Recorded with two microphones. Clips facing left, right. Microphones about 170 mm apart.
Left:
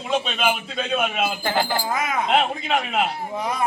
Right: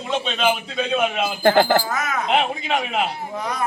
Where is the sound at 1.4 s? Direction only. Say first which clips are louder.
Right 13 dB; 55° right (ahead or behind).